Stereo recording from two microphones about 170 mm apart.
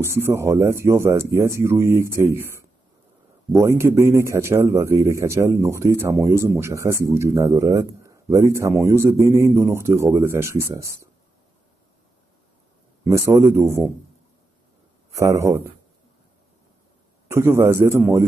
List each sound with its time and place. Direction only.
0.0 s speech: 15° right (ahead or behind)
3.5 s speech: 15° right (ahead or behind)
13.0 s speech: 15° right (ahead or behind)
15.1 s speech: 20° right (ahead or behind)
17.3 s speech: 15° right (ahead or behind)